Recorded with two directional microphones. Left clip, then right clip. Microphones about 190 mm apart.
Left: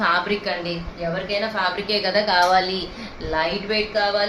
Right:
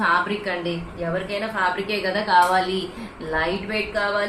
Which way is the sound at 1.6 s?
20° left (ahead or behind).